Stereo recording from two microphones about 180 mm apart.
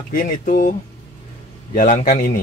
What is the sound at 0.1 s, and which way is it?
Speech, 55° left (ahead or behind).